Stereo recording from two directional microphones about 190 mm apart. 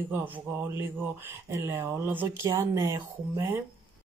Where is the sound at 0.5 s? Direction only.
10° right (ahead or behind).